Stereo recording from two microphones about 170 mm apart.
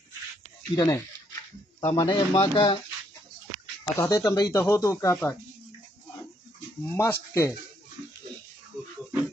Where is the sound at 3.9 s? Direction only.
15° left (ahead or behind).